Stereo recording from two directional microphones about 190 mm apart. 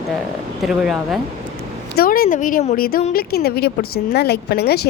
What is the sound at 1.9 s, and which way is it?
Speech, 50° left (ahead or behind).